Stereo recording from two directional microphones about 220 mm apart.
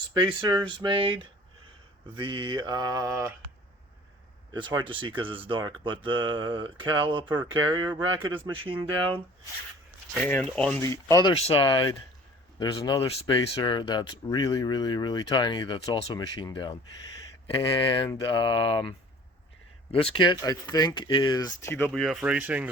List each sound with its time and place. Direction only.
0.1 s speech: 20° right (ahead or behind)
2.1 s mantra: 20° right (ahead or behind)
4.5 s speech: 20° right (ahead or behind)
10.2 s speech: 5° left (ahead or behind)
19.9 s speech: 25° left (ahead or behind); by 22.7 s 5° right (ahead or behind)